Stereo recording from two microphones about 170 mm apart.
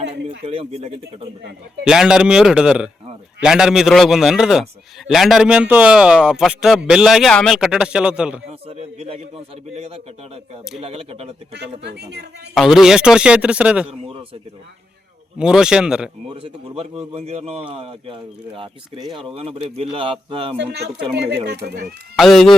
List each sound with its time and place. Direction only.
0.1 s speech: 35° right (ahead or behind)
1.8 s a man's voice: 5° right (ahead or behind)
8.4 s speech: 35° right (ahead or behind)
11.5 s speech: 85° right
12.5 s a man's voice: centre (ahead or behind)
13.8 s a sound: 35° right (ahead or behind)
15.4 s a man's voice: 5° right (ahead or behind)
16.3 s speech: 35° right (ahead or behind)
21.2 s speech: 85° right
21.7 s speech: 70° right (ahead or behind)
22.1 s a man's voice: centre (ahead or behind)